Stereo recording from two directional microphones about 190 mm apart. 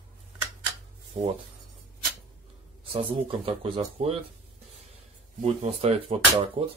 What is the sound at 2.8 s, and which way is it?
Speech, 30° right (ahead or behind).